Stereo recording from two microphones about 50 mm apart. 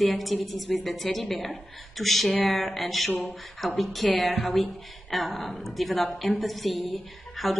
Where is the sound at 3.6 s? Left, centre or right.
Centre.